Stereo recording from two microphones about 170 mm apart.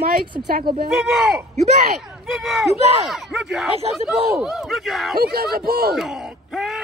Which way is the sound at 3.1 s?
Centre (ahead or behind).